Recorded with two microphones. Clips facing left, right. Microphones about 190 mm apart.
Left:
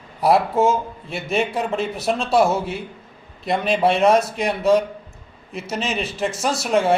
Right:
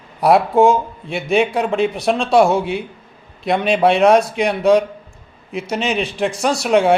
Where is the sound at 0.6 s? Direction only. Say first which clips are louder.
Right 5 dB; centre (ahead or behind).